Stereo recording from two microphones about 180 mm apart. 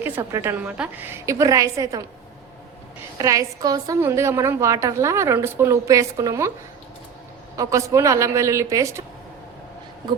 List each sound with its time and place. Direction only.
0.0 s a woman's voice: 15° right (ahead or behind)
3.2 s a woman's voice: 20° right (ahead or behind)
7.5 s a woman's voice: 20° right (ahead or behind)